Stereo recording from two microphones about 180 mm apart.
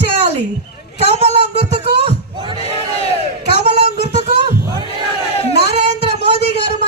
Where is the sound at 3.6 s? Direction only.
35° right (ahead or behind).